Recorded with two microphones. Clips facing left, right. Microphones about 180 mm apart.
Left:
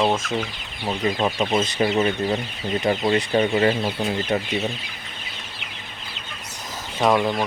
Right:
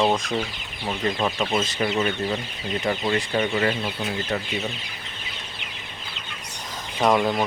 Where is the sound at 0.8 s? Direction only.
15° left (ahead or behind).